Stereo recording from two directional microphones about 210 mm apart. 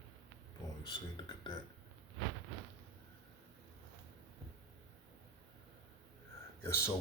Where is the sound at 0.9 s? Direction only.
20° left (ahead or behind).